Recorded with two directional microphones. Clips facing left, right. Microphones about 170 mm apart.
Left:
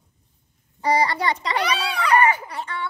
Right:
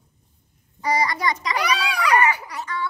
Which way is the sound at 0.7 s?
30° left (ahead or behind).